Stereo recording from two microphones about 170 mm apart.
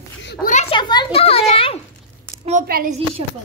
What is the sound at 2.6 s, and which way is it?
Speech, 60° right (ahead or behind).